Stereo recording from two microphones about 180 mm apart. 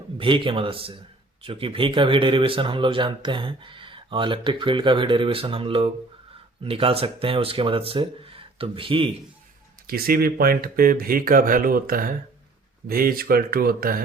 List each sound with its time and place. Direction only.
0.2 s speech: 30° right (ahead or behind)
9.8 s speech: 55° right (ahead or behind)